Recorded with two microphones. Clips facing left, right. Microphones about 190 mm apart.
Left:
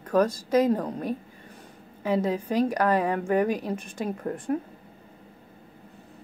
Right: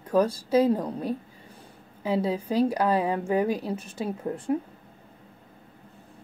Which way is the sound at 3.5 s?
10° left (ahead or behind).